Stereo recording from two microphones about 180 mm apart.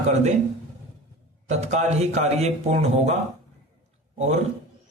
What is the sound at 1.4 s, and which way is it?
Speech, 40° right (ahead or behind).